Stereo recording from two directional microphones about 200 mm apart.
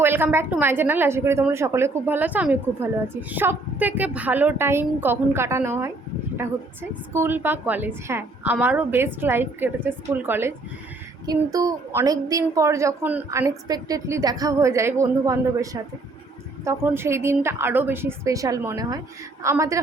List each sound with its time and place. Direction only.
0.0 s a woman's voice: 10° right (ahead or behind)
7.1 s a woman's voice: 10° right (ahead or behind)